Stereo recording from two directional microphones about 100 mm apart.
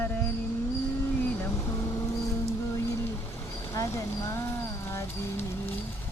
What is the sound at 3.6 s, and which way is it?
Speech, 30° left (ahead or behind).